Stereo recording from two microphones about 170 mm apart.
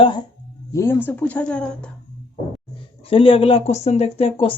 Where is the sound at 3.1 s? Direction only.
30° left (ahead or behind).